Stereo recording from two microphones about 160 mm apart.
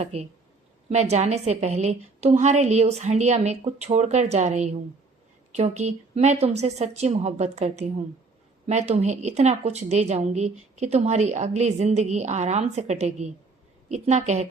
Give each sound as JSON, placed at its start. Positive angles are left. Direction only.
{"t": 0.0, "sound": "a woman's voice", "side_deg": -40}